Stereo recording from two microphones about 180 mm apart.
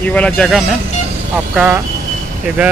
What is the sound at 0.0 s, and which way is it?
Speech, 5° left (ahead or behind).